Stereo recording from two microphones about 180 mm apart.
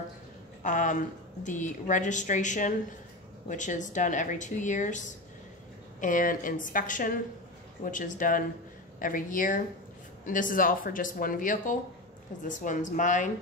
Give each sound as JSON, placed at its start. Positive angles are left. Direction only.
{"t": 0.6, "sound": "a woman's voice", "side_deg": 45}